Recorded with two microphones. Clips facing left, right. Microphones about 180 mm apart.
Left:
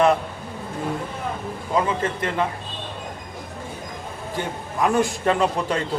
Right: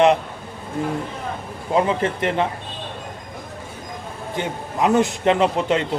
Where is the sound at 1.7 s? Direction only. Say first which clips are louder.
Right 3 dB; 25° right (ahead or behind).